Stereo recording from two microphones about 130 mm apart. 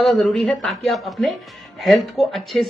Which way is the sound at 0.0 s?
Centre (ahead or behind).